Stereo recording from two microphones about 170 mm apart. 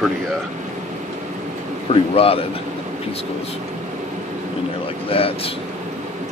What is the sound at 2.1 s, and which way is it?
Speech, 35° left (ahead or behind).